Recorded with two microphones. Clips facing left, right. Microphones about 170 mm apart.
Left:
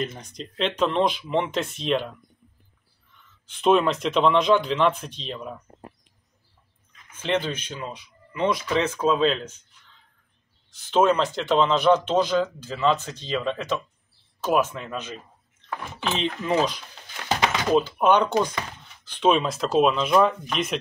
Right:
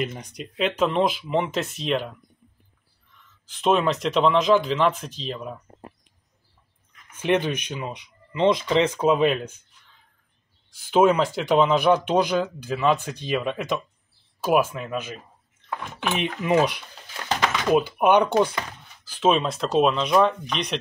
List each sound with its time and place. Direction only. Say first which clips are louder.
0.0 s speech: right 1 dB; 15° right (ahead or behind)
3.4 s speech: left 1 dB; centre (ahead or behind)
7.2 s speech: right 3 dB; 15° right (ahead or behind)
10.7 s speech: right 2 dB; 10° right (ahead or behind)
17.7 s speech: right 1 dB; 10° right (ahead or behind)